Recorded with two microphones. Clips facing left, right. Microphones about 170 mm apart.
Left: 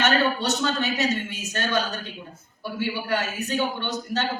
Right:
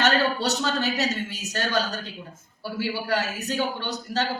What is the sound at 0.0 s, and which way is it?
A woman's voice, 40° right (ahead or behind).